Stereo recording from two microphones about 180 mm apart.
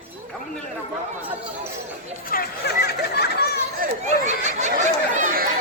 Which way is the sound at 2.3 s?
55° left (ahead or behind).